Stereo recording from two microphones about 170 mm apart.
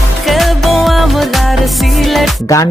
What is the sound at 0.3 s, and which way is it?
Music, centre (ahead or behind).